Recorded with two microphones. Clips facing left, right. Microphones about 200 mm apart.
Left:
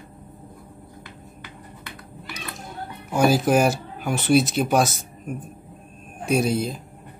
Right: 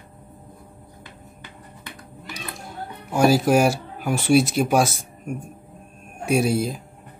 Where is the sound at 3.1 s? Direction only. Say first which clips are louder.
Right 1 dB; centre (ahead or behind).